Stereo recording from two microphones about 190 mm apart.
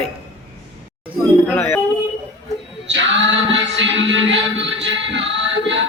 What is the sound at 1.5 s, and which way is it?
Music, 10° left (ahead or behind).